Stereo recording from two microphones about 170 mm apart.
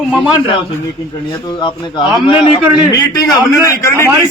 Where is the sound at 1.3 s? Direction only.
25° left (ahead or behind).